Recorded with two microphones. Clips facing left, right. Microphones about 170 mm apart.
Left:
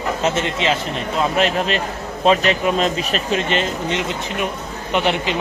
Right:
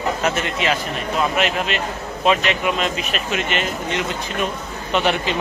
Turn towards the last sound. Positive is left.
turn(degrees=20)  # may be behind; listen again after turning